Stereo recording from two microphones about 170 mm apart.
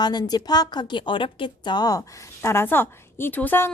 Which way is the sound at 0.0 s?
25° left (ahead or behind).